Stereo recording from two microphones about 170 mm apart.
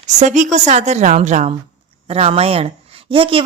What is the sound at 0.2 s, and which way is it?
A woman's voice, 45° right (ahead or behind).